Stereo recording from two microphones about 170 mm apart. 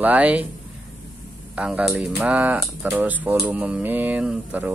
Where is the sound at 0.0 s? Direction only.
10° right (ahead or behind).